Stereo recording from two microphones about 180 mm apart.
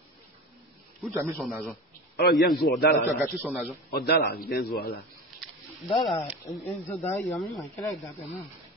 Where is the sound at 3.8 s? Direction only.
60° left (ahead or behind).